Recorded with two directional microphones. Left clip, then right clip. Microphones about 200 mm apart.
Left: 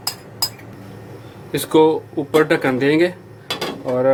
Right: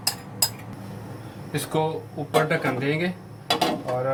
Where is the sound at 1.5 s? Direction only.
55° left (ahead or behind).